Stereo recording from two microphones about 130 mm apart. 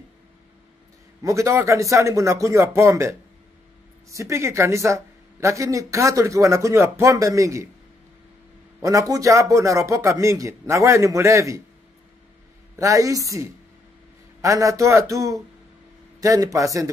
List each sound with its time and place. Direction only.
1.2 s speech: 25° right (ahead or behind)
8.8 s speech: 25° right (ahead or behind)
12.7 s speech: 25° right (ahead or behind)